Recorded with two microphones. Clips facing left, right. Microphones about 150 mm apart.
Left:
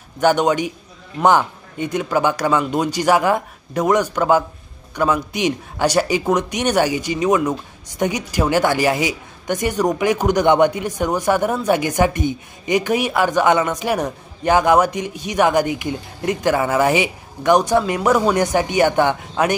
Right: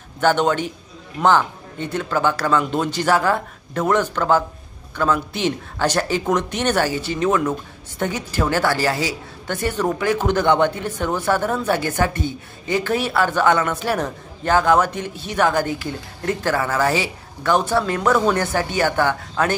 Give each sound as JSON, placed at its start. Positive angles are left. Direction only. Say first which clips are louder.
{"t": 0.2, "sound": "a man's voice", "louder": "left 2 dB", "side_deg": 10}